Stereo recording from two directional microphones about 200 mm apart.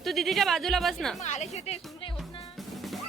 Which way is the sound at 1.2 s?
35° left (ahead or behind).